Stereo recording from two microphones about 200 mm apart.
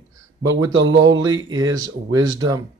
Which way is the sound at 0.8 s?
70° right (ahead or behind).